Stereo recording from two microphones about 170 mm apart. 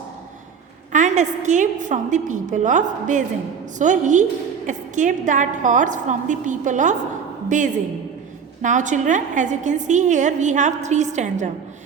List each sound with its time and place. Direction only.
0.9 s a woman's voice: 45° right (ahead or behind)